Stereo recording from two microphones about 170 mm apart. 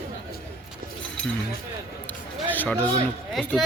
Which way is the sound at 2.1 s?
10° left (ahead or behind).